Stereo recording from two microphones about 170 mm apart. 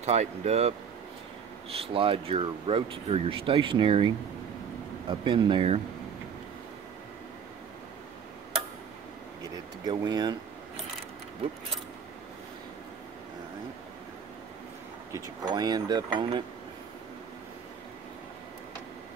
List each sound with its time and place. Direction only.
0.0 s speech: 40° right (ahead or behind)
1.8 s speech: 35° right (ahead or behind)
5.2 s speech: 30° right (ahead or behind)
9.8 s speech: 25° right (ahead or behind)
15.1 s speech: 20° right (ahead or behind)